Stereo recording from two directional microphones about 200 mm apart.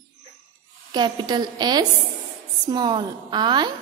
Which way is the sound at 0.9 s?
20° right (ahead or behind).